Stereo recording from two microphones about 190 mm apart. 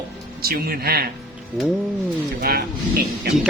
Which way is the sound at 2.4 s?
55° right (ahead or behind).